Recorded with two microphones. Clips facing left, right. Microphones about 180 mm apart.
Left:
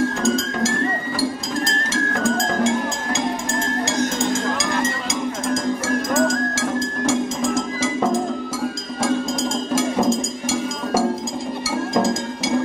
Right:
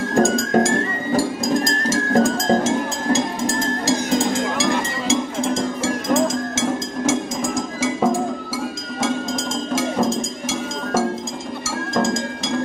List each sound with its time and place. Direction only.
0.1 s music: 50° right (ahead or behind); by 5.1 s 35° right (ahead or behind)
6.0 s music: 25° right (ahead or behind)
7.1 s music: 15° right (ahead or behind)
9.0 s a sound: centre (ahead or behind)